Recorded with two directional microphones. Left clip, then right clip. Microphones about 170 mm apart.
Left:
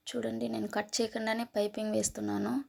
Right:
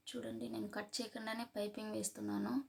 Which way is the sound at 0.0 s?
40° left (ahead or behind).